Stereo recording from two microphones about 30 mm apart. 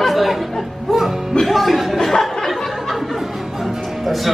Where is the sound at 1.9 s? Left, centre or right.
Centre.